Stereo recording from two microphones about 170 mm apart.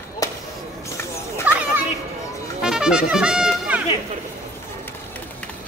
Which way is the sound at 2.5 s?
5° right (ahead or behind).